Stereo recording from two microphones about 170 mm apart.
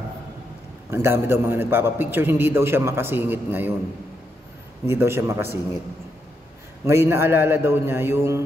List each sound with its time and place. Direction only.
0.8 s a man's voice: 15° right (ahead or behind)
4.8 s a man's voice: 15° right (ahead or behind)
6.8 s a man's voice: 15° right (ahead or behind)